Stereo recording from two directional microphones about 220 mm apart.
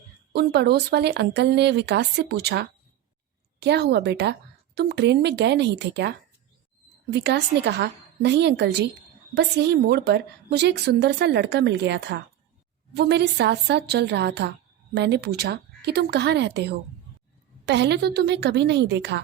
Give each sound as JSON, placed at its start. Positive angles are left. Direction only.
{"t": 0.3, "sound": "a woman's voice", "side_deg": -50}